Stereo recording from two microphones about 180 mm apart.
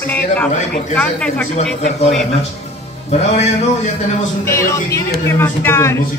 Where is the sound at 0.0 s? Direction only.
10° left (ahead or behind).